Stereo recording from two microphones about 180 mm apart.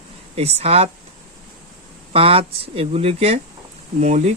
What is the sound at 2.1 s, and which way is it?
Speech, 35° right (ahead or behind).